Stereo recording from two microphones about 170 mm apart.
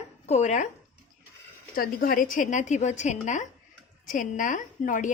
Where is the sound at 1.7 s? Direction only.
60° left (ahead or behind).